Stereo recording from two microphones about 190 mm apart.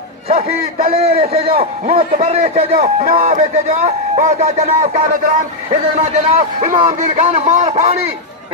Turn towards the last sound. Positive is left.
turn(degrees=-40)  # may be behind; listen again after turning